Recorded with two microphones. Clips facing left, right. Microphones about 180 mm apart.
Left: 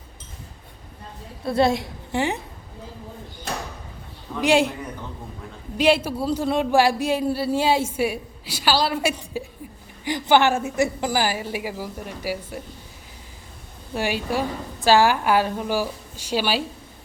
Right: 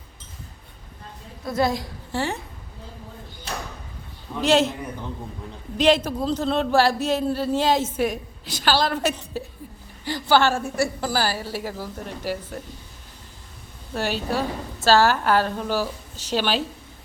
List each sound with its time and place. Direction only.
1.5 s a woman's voice: 25° left (ahead or behind)
4.4 s a man's voice: 10° left (ahead or behind)
5.7 s a man's voice: 10° left (ahead or behind)
13.9 s a man's voice: 15° left (ahead or behind)